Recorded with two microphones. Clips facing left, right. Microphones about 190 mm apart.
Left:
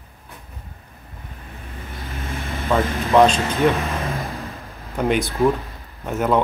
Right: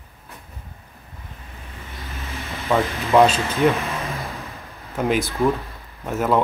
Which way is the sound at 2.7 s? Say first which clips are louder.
Even; centre (ahead or behind).